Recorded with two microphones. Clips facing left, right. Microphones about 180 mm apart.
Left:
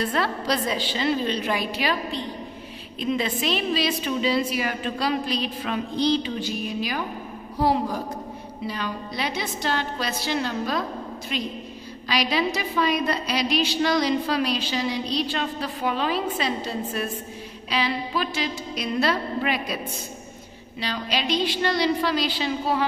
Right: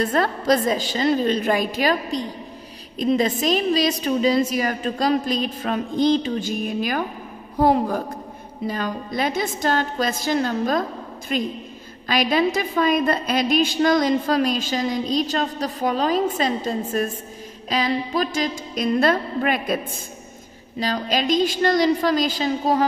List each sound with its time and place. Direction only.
0.0 s a woman's voice: 45° right (ahead or behind)
20.8 s a woman's voice: 45° right (ahead or behind)